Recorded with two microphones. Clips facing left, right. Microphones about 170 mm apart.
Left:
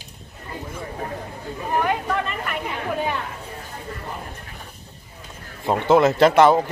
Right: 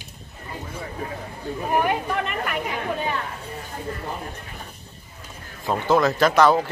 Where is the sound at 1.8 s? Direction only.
15° right (ahead or behind).